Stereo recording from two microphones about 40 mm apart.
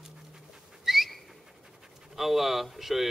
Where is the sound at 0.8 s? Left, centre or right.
Centre.